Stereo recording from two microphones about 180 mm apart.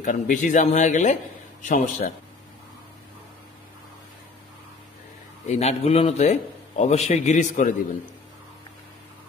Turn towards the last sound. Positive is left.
turn(degrees=45)  # may be behind; listen again after turning